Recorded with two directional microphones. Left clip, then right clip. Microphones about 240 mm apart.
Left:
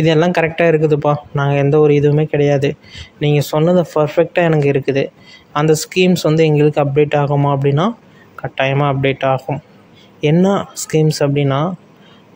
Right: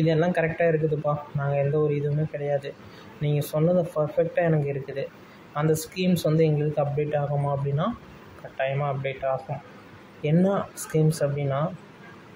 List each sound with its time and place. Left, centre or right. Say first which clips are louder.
0.0 s speech: left 10 dB; left